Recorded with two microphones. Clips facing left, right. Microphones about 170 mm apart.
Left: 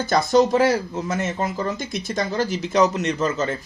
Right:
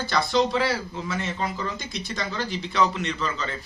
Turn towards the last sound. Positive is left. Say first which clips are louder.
# left 7 dB
turn(degrees=45)  # may be behind; listen again after turning